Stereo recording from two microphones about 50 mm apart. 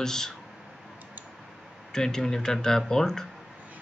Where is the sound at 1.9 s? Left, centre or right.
Centre.